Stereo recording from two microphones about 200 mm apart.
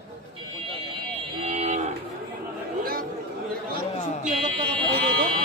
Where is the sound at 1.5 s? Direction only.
35° right (ahead or behind).